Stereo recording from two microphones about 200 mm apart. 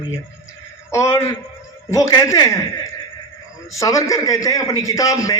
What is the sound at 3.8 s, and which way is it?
A man's voice, 15° left (ahead or behind).